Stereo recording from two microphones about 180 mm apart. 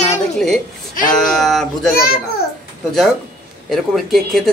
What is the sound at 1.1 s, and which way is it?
Speech, centre (ahead or behind).